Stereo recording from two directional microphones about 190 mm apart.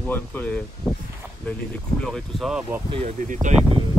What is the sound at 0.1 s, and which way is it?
Speech, 10° left (ahead or behind).